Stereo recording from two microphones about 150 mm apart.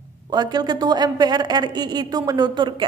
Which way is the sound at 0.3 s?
25° right (ahead or behind).